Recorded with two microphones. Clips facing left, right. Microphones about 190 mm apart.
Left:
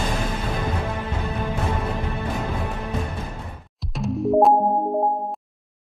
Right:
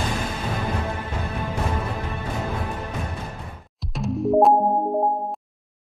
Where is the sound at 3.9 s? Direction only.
Centre (ahead or behind).